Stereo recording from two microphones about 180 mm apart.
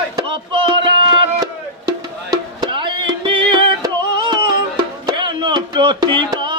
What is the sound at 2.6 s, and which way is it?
Music, 25° right (ahead or behind).